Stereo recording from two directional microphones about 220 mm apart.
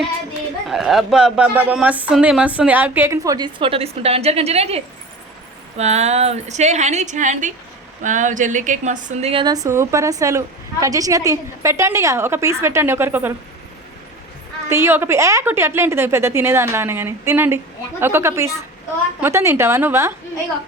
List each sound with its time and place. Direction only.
0.7 s a woman's voice: centre (ahead or behind)
14.7 s a woman's voice: 10° right (ahead or behind)